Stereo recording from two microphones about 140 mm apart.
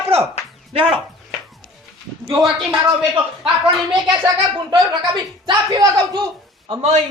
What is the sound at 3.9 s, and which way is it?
Speech, 30° right (ahead or behind).